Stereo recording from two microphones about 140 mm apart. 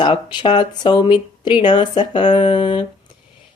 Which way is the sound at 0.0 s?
35° left (ahead or behind).